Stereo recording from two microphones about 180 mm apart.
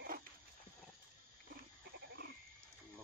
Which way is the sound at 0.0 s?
55° right (ahead or behind).